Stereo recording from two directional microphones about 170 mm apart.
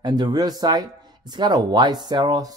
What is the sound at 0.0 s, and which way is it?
Speech, 25° right (ahead or behind).